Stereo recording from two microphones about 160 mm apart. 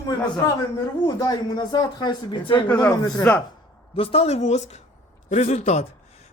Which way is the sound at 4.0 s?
40° left (ahead or behind).